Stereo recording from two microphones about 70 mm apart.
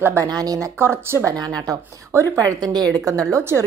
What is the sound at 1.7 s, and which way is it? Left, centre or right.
Speech, right.